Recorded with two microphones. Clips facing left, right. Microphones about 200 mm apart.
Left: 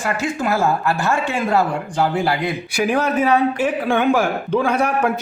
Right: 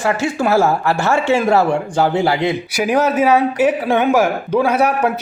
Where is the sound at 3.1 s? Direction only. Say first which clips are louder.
Right 3 dB; 5° right (ahead or behind).